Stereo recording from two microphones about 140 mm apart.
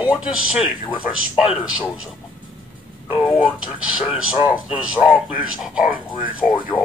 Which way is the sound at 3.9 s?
5° right (ahead or behind).